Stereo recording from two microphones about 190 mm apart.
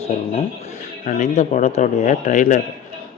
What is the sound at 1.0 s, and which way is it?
Speech, 45° left (ahead or behind).